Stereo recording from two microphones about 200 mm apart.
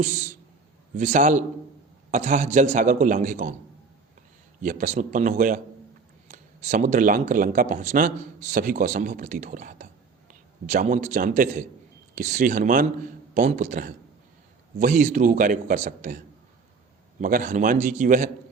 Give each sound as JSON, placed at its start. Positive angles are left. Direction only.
{"t": 0.0, "sound": "a man's voice", "side_deg": -40}
{"t": 4.6, "sound": "a man's voice", "side_deg": -40}